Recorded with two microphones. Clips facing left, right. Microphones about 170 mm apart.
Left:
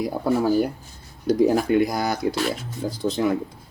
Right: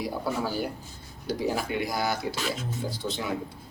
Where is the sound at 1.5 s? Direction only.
45° left (ahead or behind).